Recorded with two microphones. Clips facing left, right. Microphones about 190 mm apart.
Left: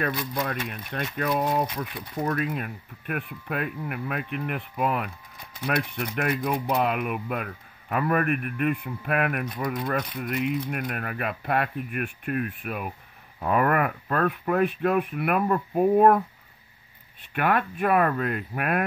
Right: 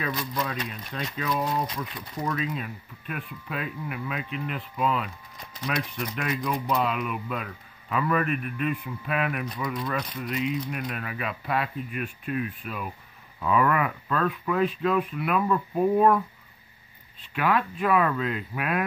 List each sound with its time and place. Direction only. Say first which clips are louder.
0.0 s speech: left 2 dB; 55° left (ahead or behind)
17.2 s speech: left 1 dB; 55° left (ahead or behind)